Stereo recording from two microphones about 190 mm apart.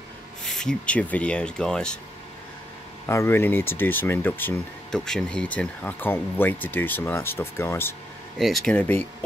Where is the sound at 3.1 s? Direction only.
15° left (ahead or behind).